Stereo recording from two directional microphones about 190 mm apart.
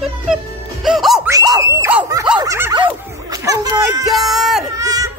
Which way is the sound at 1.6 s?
15° right (ahead or behind).